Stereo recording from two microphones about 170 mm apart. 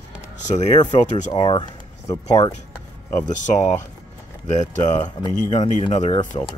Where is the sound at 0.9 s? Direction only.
45° left (ahead or behind).